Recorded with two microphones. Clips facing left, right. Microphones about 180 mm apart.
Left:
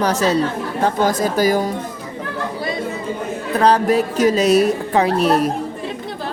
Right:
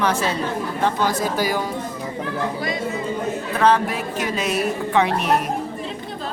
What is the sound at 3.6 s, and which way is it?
A woman's voice, 40° left (ahead or behind).